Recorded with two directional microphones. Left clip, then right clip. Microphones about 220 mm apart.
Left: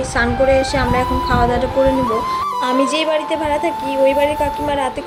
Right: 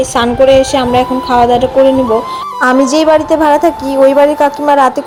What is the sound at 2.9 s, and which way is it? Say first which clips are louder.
Speech: right 9 dB; 25° right (ahead or behind).